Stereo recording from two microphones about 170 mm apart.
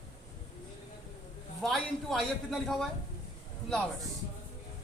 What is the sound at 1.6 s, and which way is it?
A man's voice, 5° left (ahead or behind).